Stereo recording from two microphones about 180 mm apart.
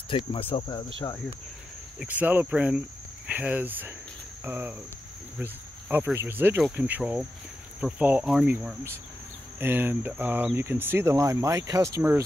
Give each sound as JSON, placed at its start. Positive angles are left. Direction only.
{"t": 0.1, "sound": "speech", "side_deg": 30}
{"t": 2.0, "sound": "speech", "side_deg": -10}